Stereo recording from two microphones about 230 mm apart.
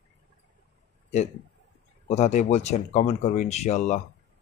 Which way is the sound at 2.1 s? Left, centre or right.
Left.